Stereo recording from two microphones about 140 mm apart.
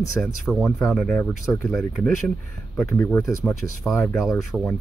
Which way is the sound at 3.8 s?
Centre (ahead or behind).